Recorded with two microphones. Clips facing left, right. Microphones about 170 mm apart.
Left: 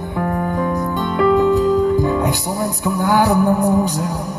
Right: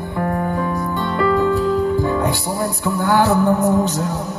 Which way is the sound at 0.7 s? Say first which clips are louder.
Left 2 dB; 15° left (ahead or behind).